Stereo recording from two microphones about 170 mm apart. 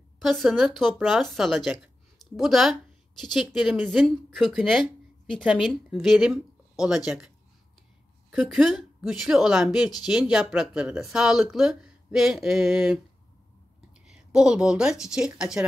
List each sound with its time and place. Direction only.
0.2 s a woman's voice: centre (ahead or behind)
8.3 s speech: centre (ahead or behind)
14.0 s speech: 5° right (ahead or behind)